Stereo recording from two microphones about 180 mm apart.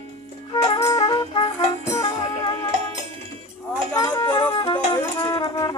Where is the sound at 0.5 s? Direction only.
20° left (ahead or behind).